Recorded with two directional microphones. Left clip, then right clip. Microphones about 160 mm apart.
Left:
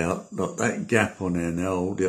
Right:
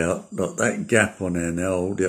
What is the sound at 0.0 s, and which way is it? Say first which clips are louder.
Speech: right 3 dB; 20° right (ahead or behind).